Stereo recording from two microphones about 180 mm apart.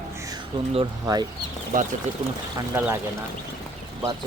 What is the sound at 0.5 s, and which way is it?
Speech, 25° right (ahead or behind).